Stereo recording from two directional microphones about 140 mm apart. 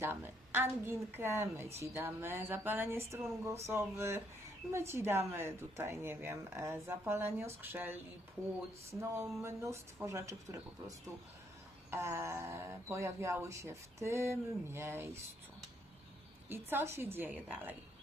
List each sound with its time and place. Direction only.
0.0 s speech: 15° right (ahead or behind)
16.5 s speech: 15° right (ahead or behind)